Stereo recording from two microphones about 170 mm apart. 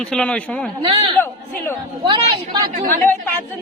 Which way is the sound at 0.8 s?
30° right (ahead or behind).